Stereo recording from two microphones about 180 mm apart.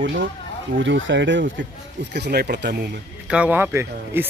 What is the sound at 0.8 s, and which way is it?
Speech, 90° right.